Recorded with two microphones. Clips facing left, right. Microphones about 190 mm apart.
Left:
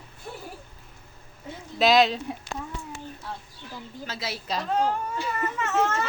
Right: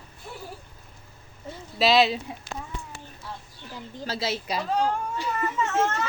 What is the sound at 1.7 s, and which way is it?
Speech, centre (ahead or behind).